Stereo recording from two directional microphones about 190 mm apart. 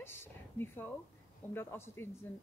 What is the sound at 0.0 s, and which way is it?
A woman's voice, 10° left (ahead or behind).